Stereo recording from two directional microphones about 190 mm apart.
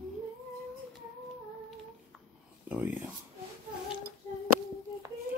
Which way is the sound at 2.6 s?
10° right (ahead or behind).